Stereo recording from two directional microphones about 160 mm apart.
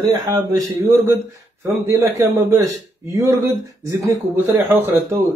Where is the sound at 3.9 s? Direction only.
20° right (ahead or behind).